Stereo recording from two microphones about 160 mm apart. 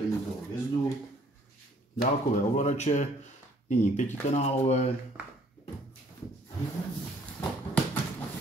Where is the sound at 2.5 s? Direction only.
45° left (ahead or behind).